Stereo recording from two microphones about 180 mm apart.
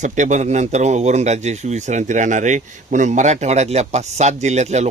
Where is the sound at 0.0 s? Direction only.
40° right (ahead or behind).